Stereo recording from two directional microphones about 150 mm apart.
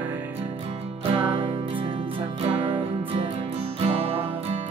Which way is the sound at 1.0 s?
35° right (ahead or behind).